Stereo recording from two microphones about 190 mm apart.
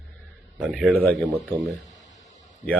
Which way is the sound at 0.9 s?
10° left (ahead or behind).